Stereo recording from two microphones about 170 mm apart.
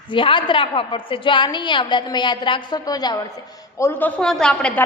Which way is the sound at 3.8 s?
10° left (ahead or behind).